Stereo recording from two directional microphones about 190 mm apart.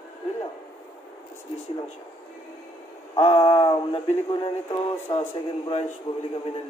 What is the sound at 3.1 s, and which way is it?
A man's voice, 30° left (ahead or behind).